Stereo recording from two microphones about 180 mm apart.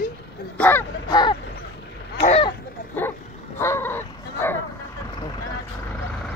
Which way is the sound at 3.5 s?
15° left (ahead or behind).